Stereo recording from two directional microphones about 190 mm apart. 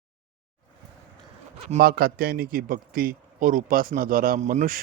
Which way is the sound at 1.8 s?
50° right (ahead or behind).